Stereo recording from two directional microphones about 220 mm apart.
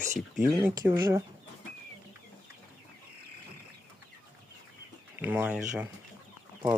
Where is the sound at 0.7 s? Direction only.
10° right (ahead or behind).